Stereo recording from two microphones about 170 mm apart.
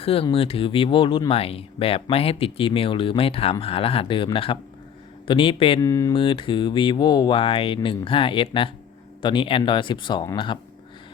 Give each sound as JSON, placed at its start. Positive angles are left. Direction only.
{"t": 0.0, "sound": "speech", "side_deg": 35}
{"t": 5.8, "sound": "speech", "side_deg": 15}
{"t": 6.1, "sound": "speech", "side_deg": 30}